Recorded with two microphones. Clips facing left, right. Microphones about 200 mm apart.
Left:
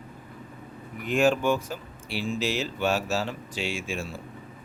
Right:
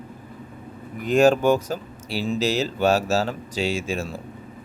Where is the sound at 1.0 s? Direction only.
40° right (ahead or behind).